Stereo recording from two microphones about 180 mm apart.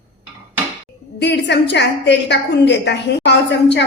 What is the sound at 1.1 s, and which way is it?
A woman's voice, 70° left (ahead or behind).